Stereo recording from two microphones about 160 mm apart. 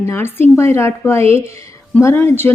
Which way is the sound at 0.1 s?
15° left (ahead or behind).